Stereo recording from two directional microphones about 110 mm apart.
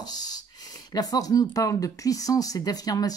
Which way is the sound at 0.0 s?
35° left (ahead or behind).